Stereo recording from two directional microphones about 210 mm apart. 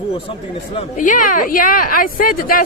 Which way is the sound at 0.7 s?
35° left (ahead or behind).